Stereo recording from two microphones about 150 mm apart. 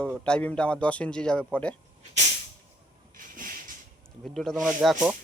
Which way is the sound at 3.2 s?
65° right (ahead or behind).